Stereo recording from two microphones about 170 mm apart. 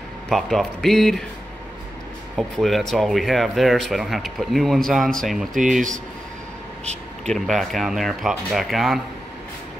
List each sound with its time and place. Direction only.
0.3 s speech: centre (ahead or behind)
2.3 s speech: centre (ahead or behind)
6.8 s a sound: 40° right (ahead or behind)
7.3 s speech: centre (ahead or behind)